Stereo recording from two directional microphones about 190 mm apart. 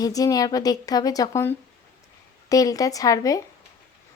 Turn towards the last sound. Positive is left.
turn(degrees=20)  # may be behind; listen again after turning